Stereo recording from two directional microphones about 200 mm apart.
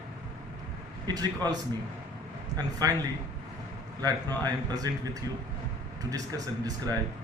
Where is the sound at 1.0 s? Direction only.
20° right (ahead or behind).